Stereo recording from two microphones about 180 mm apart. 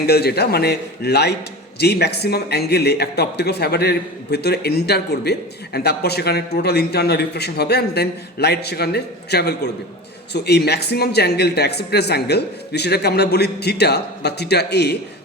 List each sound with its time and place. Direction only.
0.0 s speech: 60° left (ahead or behind)